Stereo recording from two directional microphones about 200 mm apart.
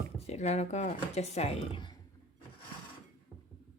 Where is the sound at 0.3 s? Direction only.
35° left (ahead or behind).